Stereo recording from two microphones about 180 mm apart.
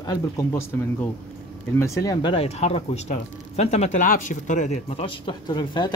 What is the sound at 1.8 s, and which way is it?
Speech, 20° left (ahead or behind).